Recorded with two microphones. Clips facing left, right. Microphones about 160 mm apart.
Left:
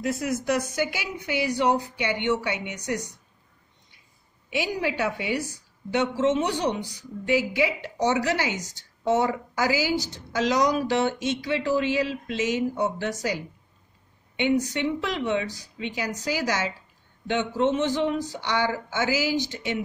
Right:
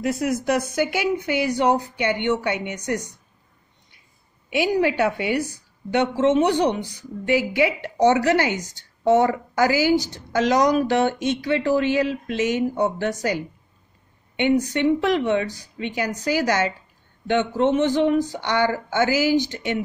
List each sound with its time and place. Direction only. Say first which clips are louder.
0.0 s a woman's voice: right 4 dB; 60° right (ahead or behind)
4.5 s a woman's voice: right 7 dB; 60° right (ahead or behind)